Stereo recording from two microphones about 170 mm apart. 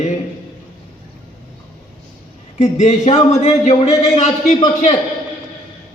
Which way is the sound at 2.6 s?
40° left (ahead or behind).